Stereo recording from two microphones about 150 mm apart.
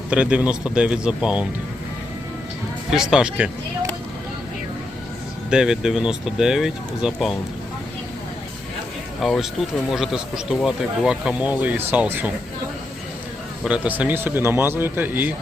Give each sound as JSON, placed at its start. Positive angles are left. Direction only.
{"t": 0.1, "sound": "speech", "side_deg": -5}
{"t": 2.9, "sound": "speech", "side_deg": -5}
{"t": 5.5, "sound": "speech", "side_deg": -5}
{"t": 9.2, "sound": "speech", "side_deg": 0}
{"t": 13.7, "sound": "speech", "side_deg": -10}